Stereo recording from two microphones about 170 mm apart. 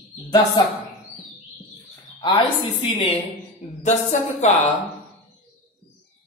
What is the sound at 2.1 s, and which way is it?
Speech, 30° left (ahead or behind).